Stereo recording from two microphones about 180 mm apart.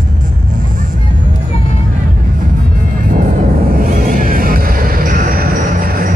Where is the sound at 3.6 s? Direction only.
55° right (ahead or behind).